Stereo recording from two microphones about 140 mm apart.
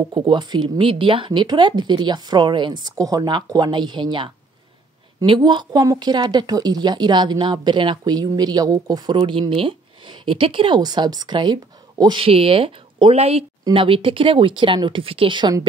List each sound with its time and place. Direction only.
0.0 s speech: 35° right (ahead or behind)